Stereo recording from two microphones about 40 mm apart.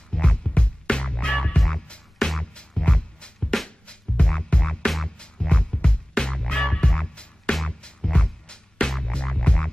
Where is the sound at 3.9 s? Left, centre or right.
Left.